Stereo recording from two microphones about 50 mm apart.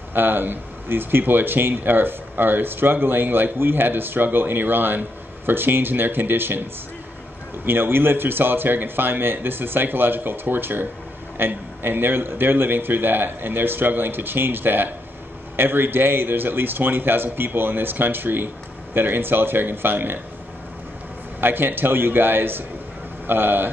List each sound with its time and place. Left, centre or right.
0.1 s speech: right
7.6 s speech: right
21.4 s speech: right